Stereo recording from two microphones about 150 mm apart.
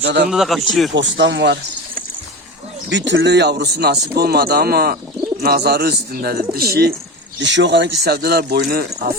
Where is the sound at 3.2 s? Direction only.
90° right.